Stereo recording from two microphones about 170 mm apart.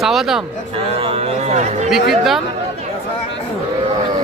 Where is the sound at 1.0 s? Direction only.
35° right (ahead or behind).